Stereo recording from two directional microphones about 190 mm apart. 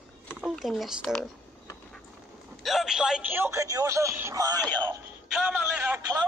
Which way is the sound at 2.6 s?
Centre (ahead or behind).